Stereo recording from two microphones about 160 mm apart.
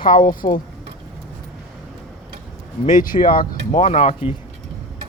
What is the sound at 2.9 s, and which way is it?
Speech, 60° left (ahead or behind).